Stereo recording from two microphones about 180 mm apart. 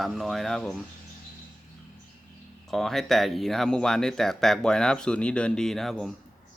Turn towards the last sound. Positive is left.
turn(degrees=0)  # may be behind; listen again after turning